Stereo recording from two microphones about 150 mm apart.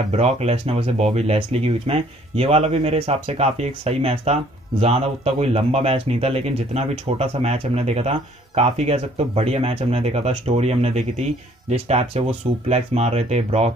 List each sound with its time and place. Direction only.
0.1 s speech: 45° right (ahead or behind)